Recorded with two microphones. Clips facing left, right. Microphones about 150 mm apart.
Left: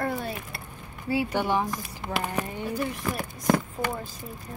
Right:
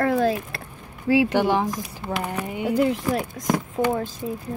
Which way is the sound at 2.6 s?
90° right.